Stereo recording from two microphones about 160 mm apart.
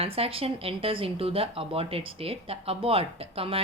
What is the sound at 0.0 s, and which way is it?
Speech, 35° right (ahead or behind).